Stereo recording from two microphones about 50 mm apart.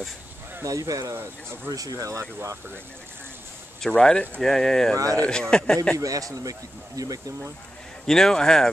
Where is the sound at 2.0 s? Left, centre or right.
Right.